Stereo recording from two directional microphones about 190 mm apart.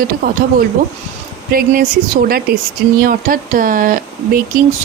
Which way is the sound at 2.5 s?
55° right (ahead or behind).